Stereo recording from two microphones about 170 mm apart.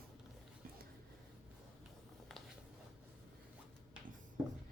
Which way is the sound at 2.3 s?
Centre (ahead or behind).